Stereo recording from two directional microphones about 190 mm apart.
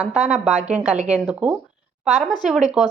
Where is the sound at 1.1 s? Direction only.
5° right (ahead or behind).